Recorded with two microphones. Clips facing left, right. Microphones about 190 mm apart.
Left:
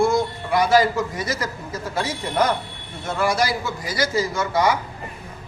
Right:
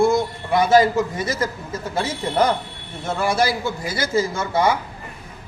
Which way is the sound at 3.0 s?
25° right (ahead or behind).